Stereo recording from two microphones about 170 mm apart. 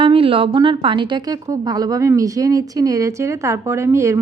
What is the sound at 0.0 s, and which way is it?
A woman's voice, 30° right (ahead or behind).